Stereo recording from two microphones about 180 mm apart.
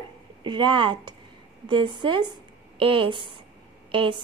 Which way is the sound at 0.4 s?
25° right (ahead or behind).